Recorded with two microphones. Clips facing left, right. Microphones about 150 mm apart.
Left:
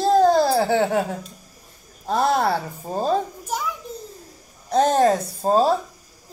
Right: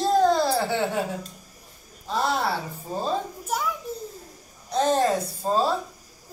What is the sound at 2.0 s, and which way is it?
Speech, 50° left (ahead or behind).